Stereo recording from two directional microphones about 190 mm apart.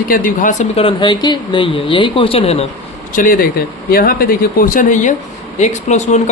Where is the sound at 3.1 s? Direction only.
45° left (ahead or behind).